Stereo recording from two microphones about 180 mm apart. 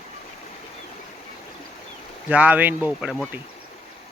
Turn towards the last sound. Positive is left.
turn(degrees=-5)  # may be behind; listen again after turning